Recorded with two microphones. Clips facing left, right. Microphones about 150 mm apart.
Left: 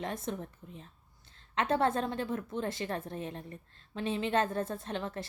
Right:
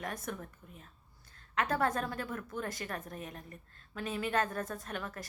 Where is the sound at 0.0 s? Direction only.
25° left (ahead or behind).